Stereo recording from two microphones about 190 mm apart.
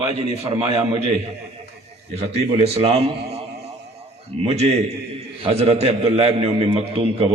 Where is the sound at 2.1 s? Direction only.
35° right (ahead or behind).